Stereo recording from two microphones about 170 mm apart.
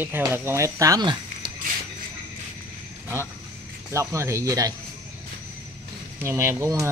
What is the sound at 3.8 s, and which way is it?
Speech, 15° right (ahead or behind).